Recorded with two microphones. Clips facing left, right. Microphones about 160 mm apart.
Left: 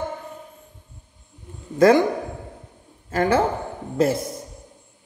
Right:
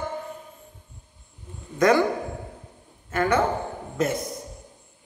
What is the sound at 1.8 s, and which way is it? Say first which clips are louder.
Speech: left 5 dB; 30° left (ahead or behind).